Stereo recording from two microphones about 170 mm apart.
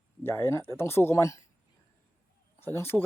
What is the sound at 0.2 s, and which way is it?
Speech, 15° left (ahead or behind).